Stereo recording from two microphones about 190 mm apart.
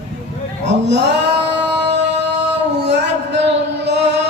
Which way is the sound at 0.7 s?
65° right (ahead or behind).